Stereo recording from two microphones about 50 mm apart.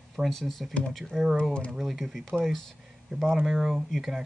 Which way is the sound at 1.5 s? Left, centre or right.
Centre.